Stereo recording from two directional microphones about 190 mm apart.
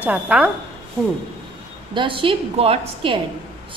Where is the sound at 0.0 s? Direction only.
5° right (ahead or behind).